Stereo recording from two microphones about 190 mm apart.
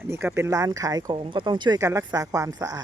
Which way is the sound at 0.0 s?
10° right (ahead or behind).